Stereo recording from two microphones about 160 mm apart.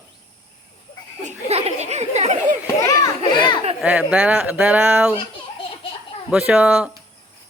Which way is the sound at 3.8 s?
5° right (ahead or behind).